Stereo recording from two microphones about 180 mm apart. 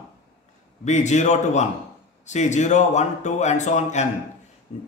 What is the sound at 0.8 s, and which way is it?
A man's voice, 40° left (ahead or behind).